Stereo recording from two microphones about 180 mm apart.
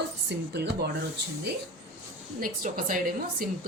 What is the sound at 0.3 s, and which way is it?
Speech, 70° right (ahead or behind).